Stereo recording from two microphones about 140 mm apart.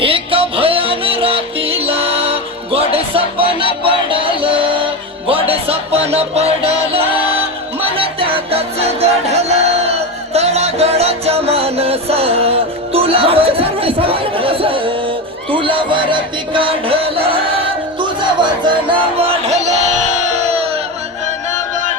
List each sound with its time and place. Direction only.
0.0 s music: 40° right (ahead or behind)
20.2 s crowd: 50° right (ahead or behind)